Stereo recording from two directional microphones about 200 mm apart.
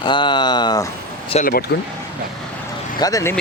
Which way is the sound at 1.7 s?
55° left (ahead or behind).